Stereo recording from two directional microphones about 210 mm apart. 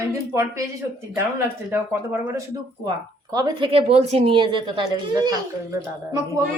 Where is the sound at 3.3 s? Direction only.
20° right (ahead or behind).